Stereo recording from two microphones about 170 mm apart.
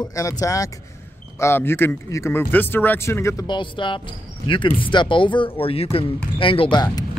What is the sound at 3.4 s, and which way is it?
Speech, 30° left (ahead or behind).